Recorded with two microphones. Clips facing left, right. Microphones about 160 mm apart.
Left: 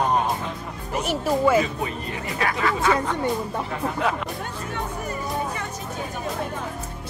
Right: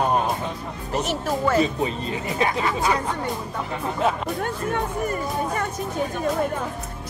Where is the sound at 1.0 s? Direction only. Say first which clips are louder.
Left 5 dB; 10° left (ahead or behind).